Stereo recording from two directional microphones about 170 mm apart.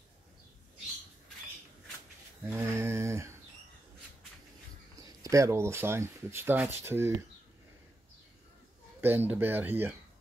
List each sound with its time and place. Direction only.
2.5 s a sound: 15° right (ahead or behind)
5.2 s speech: 20° right (ahead or behind)
9.0 s speech: 10° right (ahead or behind)